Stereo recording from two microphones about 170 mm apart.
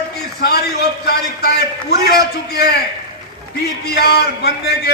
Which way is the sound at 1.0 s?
70° left (ahead or behind).